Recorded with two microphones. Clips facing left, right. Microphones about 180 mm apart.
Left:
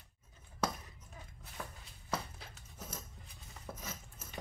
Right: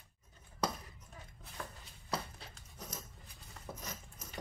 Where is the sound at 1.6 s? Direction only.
5° left (ahead or behind).